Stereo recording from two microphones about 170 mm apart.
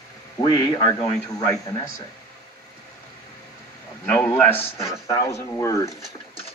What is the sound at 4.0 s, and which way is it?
Speech, 15° left (ahead or behind).